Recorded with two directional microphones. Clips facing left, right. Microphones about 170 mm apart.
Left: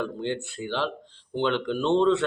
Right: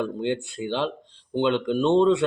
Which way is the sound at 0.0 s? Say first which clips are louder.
Right 3 dB; 15° right (ahead or behind).